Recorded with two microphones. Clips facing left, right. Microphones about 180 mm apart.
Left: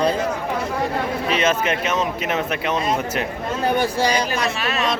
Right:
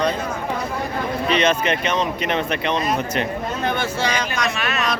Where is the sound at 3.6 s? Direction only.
35° left (ahead or behind).